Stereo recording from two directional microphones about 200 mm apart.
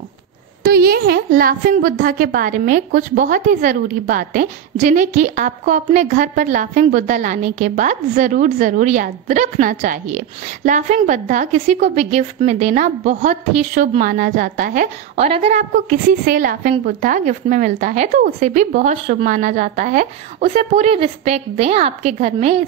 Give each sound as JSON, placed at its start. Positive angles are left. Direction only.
{"t": 0.7, "sound": "a woman's voice", "side_deg": -50}